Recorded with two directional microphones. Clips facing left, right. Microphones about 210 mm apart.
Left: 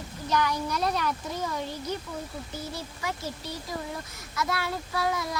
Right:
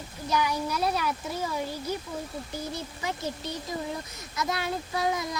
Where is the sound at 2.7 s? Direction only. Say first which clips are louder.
Right 1 dB; 20° right (ahead or behind).